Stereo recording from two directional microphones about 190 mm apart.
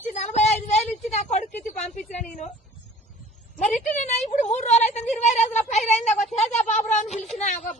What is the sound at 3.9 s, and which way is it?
A woman's voice, 35° left (ahead or behind).